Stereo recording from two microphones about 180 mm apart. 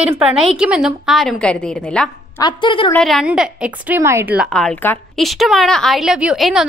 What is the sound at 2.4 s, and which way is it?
Speech, 25° left (ahead or behind).